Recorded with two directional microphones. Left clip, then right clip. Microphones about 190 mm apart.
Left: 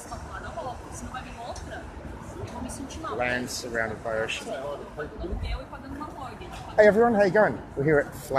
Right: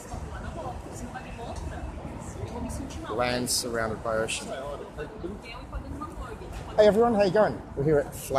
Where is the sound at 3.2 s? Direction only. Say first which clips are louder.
Right 1 dB; 20° right (ahead or behind).